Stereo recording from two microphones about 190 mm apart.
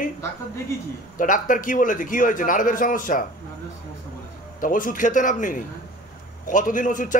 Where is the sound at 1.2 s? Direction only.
45° left (ahead or behind).